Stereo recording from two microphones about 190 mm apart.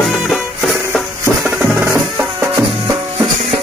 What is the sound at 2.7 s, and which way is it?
Music, 20° right (ahead or behind).